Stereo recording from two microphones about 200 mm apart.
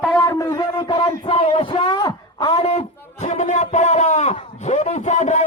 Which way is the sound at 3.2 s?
35° left (ahead or behind).